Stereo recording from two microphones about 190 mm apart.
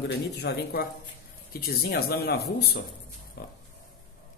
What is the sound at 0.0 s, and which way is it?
Speech, 55° left (ahead or behind).